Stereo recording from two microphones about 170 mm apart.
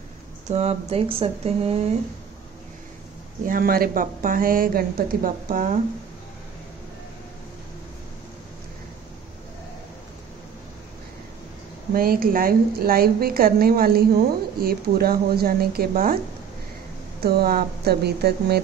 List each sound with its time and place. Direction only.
0.5 s speech: 40° right (ahead or behind)
3.4 s a woman's voice: 55° right (ahead or behind)
11.9 s a woman's voice: 60° right (ahead or behind)
17.2 s speech: 65° right (ahead or behind)